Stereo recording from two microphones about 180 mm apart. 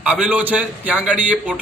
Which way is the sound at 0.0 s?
5° right (ahead or behind).